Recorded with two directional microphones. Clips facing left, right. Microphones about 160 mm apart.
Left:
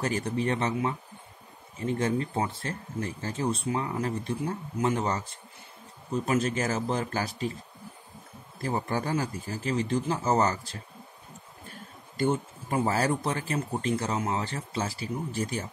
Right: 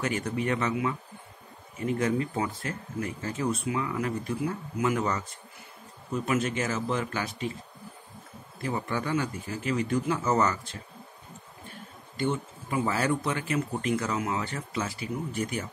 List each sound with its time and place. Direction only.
0.0 s speech: 35° left (ahead or behind)
6.2 s speech: 35° left (ahead or behind)
8.5 s speech: 35° left (ahead or behind)
12.2 s speech: 40° left (ahead or behind)